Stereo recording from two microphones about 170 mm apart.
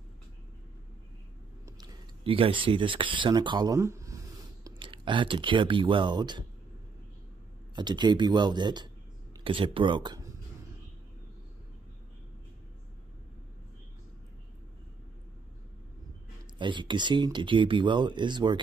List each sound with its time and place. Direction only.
2.2 s speech: 30° right (ahead or behind)
4.6 s speech: 30° right (ahead or behind)
7.7 s speech: 25° right (ahead or behind)
16.5 s speech: 30° right (ahead or behind)